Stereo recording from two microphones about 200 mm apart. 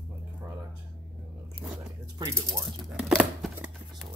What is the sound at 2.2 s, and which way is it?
Speech, 15° right (ahead or behind).